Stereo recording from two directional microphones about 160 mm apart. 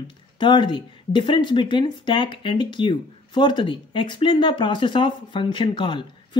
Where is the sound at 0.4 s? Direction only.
30° left (ahead or behind).